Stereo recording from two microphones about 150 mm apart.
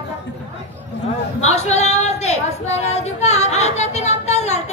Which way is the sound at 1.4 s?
45° left (ahead or behind).